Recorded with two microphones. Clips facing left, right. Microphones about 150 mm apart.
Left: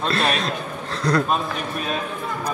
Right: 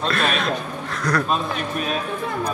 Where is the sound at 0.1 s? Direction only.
30° left (ahead or behind).